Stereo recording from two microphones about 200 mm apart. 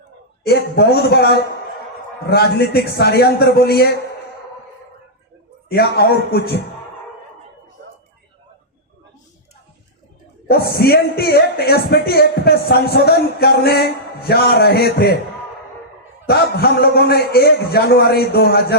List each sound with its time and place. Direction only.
0.4 s speech: 55° left (ahead or behind)
5.6 s speech: 55° left (ahead or behind)
10.5 s speech: 55° left (ahead or behind)
16.2 s speech: 50° left (ahead or behind)